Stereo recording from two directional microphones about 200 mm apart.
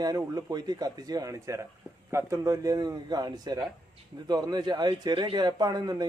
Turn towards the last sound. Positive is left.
turn(degrees=-20)  # may be behind; listen again after turning